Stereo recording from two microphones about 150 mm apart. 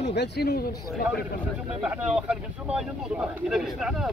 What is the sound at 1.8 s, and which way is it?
Speech, 5° right (ahead or behind).